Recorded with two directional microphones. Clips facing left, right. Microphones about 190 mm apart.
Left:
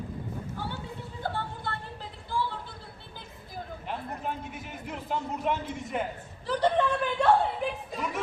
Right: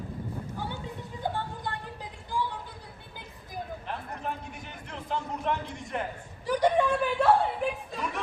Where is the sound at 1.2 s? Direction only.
15° right (ahead or behind).